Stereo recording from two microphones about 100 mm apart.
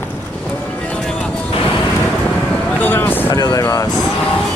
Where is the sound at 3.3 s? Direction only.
40° left (ahead or behind).